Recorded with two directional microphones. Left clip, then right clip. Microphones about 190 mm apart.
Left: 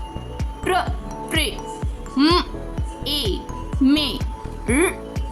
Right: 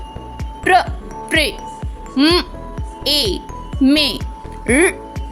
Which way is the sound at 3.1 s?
30° right (ahead or behind).